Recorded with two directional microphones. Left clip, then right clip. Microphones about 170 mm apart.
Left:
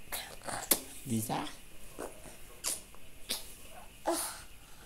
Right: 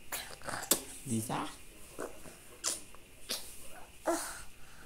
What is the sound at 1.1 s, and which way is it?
Speech, 25° left (ahead or behind).